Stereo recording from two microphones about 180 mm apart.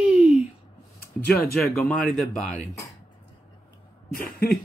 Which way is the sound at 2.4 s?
40° left (ahead or behind).